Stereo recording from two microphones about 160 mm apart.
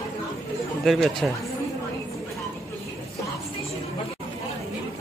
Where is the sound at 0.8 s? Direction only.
Centre (ahead or behind).